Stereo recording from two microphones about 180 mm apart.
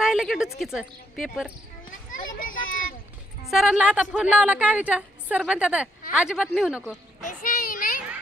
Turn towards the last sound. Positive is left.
turn(degrees=50)  # may be behind; listen again after turning